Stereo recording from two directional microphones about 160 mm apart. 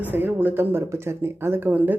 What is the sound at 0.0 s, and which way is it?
Speech, 10° right (ahead or behind).